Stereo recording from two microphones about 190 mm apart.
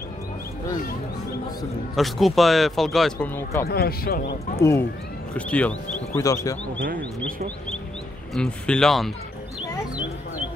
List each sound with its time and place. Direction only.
2.0 s speech: centre (ahead or behind)
3.6 s speech: 55° left (ahead or behind)
4.6 s speech: 15° left (ahead or behind)
7.2 s speech: 50° right (ahead or behind)
8.4 s speech: 5° left (ahead or behind)